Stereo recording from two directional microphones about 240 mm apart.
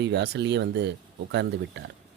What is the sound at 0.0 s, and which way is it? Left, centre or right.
Speech, right.